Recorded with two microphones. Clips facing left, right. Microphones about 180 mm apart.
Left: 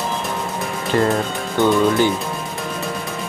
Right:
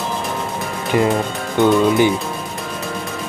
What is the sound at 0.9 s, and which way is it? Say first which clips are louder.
Speech: right 1 dB; 10° right (ahead or behind).